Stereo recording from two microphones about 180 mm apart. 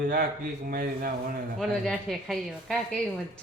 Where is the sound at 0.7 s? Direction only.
55° right (ahead or behind).